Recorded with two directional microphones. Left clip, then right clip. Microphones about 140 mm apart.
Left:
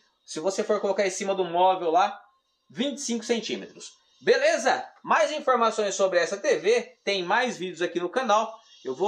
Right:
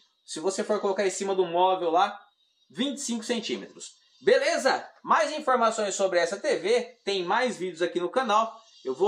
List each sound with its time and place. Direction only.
0.3 s speech: 30° left (ahead or behind)